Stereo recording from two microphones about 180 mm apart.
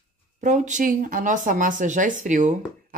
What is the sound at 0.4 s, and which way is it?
Speech, 45° right (ahead or behind).